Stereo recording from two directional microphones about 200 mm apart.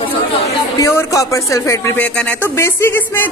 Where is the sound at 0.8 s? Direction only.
15° left (ahead or behind).